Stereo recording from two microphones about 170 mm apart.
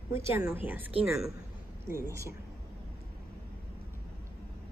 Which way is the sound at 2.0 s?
15° right (ahead or behind).